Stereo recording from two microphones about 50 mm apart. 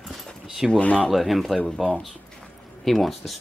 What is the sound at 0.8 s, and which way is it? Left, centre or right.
Speech, left.